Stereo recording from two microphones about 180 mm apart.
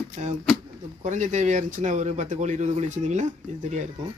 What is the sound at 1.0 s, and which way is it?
Speech, 40° right (ahead or behind).